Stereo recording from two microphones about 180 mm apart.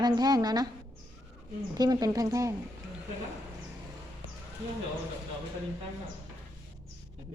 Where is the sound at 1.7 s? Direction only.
20° right (ahead or behind).